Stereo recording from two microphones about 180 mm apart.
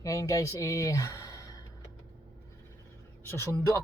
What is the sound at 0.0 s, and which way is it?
Speech, 20° left (ahead or behind).